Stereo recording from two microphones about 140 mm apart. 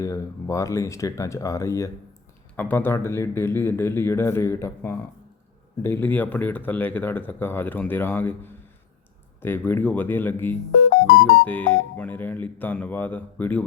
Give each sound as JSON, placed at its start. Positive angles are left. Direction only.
{"t": 0.0, "sound": "speech", "side_deg": 25}
{"t": 10.8, "sound": "music", "side_deg": 90}
{"t": 11.4, "sound": "speech", "side_deg": 10}